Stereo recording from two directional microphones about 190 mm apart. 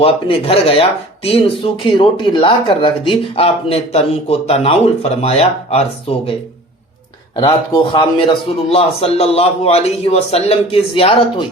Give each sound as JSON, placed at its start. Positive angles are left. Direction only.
{"t": 0.0, "sound": "speech", "side_deg": 30}
{"t": 7.3, "sound": "a man's voice", "side_deg": 25}